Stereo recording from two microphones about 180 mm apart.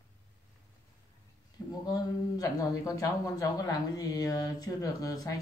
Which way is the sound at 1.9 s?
20° left (ahead or behind).